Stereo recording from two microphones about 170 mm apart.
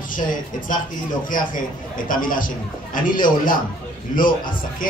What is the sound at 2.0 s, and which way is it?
A man's voice, 55° left (ahead or behind).